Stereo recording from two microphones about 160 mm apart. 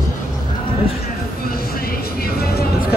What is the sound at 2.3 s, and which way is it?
Music, 75° left (ahead or behind).